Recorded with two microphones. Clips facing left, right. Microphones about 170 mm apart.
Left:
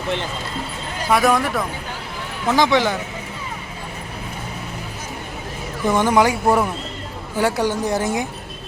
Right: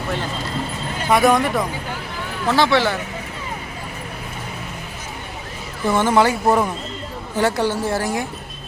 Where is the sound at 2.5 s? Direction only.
15° left (ahead or behind).